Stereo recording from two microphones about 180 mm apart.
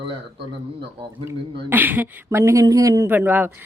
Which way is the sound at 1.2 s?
10° right (ahead or behind).